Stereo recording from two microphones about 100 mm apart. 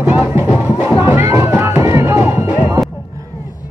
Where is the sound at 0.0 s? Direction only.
20° right (ahead or behind).